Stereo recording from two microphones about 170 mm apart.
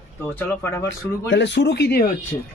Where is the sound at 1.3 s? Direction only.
90° left; by 2.1 s 70° left (ahead or behind).